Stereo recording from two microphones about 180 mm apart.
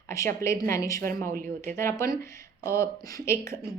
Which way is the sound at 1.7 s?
15° left (ahead or behind).